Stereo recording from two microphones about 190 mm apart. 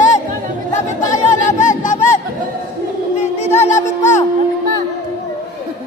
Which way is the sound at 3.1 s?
35° left (ahead or behind).